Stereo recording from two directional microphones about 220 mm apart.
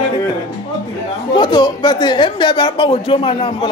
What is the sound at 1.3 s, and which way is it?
A woman's voice, 20° left (ahead or behind).